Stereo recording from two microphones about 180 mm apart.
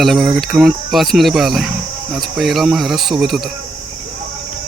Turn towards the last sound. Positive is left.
turn(degrees=0)  # may be behind; listen again after turning